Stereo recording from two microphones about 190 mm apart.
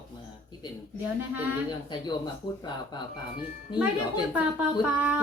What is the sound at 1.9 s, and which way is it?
Speech, 20° left (ahead or behind).